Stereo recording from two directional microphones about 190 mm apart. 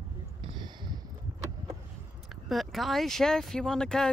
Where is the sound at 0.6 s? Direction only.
25° right (ahead or behind).